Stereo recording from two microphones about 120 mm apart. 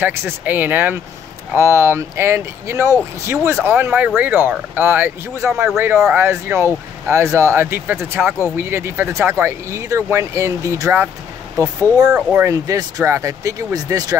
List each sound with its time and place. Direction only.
0.0 s speech: 15° right (ahead or behind)
12.1 s speech: 10° right (ahead or behind)
12.4 s speech: 30° right (ahead or behind)